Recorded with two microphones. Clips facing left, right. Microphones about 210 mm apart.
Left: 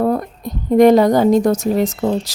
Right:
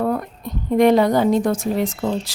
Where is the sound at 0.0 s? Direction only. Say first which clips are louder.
Left 4 dB; 35° left (ahead or behind).